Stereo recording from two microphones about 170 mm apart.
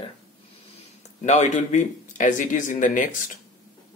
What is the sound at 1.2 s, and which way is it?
Speech, 45° left (ahead or behind).